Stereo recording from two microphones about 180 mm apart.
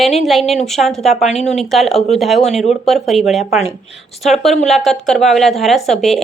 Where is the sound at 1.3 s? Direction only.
40° left (ahead or behind).